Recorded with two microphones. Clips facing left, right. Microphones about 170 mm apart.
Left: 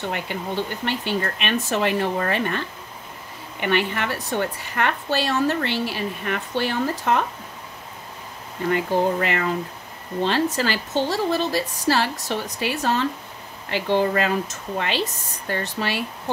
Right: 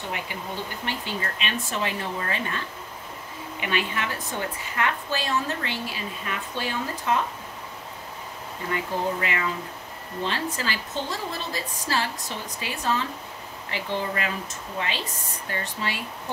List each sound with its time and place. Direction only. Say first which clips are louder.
0.1 s speech: left 5 dB; 65° left (ahead or behind)
3.6 s a woman's voice: left 6 dB; 60° left (ahead or behind)
8.7 s speech: left 6 dB; 60° left (ahead or behind)
10.6 s a woman's voice: left 7 dB; 75° left (ahead or behind)